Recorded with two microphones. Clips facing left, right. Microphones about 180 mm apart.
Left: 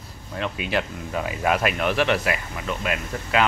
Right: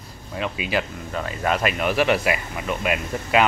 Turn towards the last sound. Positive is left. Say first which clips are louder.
# right 3 dB
turn(degrees=-15)  # may be behind; listen again after turning